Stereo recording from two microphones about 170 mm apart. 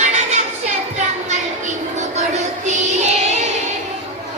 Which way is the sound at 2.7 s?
40° right (ahead or behind).